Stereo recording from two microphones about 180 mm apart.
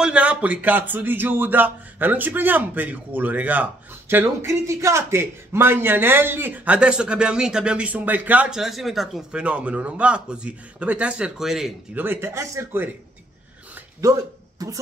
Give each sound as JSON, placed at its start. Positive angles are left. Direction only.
{"t": 0.0, "sound": "a man's voice", "side_deg": -5}
{"t": 14.0, "sound": "speech", "side_deg": -20}